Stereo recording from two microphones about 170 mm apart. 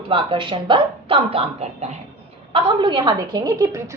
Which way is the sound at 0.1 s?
30° right (ahead or behind).